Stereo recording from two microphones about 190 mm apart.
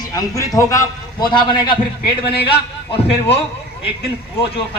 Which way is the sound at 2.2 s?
60° left (ahead or behind).